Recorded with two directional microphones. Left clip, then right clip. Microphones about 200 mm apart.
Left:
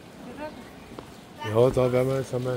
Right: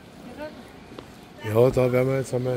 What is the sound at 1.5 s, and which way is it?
Speech, 15° right (ahead or behind).